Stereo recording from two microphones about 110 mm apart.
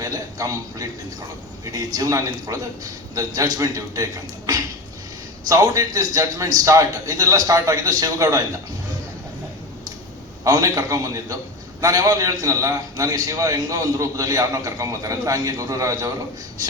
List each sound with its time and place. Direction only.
0.0 s a man's voice: 30° right (ahead or behind)
10.4 s a man's voice: 30° right (ahead or behind)